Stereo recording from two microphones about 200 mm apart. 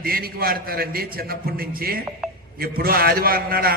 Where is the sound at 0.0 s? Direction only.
50° right (ahead or behind).